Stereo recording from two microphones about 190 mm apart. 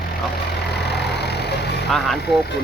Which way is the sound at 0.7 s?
60° left (ahead or behind).